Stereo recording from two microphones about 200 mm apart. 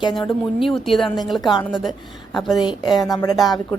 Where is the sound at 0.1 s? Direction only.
Centre (ahead or behind).